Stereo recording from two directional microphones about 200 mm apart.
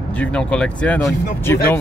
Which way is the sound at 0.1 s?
5° left (ahead or behind).